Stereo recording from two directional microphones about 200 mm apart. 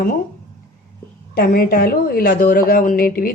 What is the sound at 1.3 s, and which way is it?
Speech, 50° left (ahead or behind).